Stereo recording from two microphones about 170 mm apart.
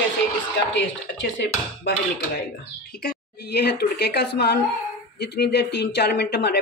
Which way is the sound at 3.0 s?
70° left (ahead or behind).